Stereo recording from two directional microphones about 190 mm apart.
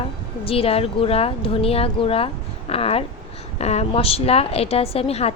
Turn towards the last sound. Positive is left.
turn(degrees=30)  # may be behind; listen again after turning